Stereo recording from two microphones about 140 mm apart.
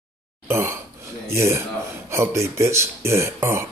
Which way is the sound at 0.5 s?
20° right (ahead or behind).